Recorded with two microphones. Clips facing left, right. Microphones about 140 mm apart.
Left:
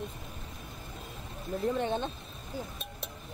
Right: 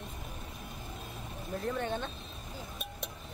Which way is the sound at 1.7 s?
15° left (ahead or behind).